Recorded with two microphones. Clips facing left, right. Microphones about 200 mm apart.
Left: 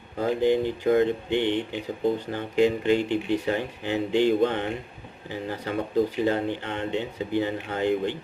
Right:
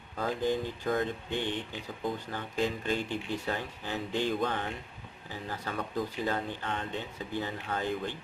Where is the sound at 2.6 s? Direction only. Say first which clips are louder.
Left 10 dB; 70° left (ahead or behind).